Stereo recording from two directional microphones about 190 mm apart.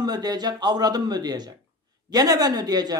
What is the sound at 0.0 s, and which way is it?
A man's voice, 20° right (ahead or behind).